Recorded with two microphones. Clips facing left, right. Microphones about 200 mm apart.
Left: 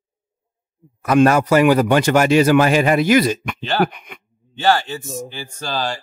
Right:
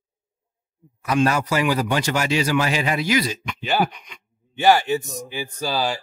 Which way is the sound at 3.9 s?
55° left (ahead or behind).